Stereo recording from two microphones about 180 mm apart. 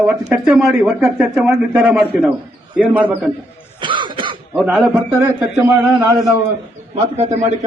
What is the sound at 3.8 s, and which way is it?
Cough, 25° right (ahead or behind).